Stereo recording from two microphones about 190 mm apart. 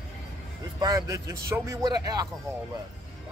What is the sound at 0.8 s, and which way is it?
A man's voice, 20° right (ahead or behind).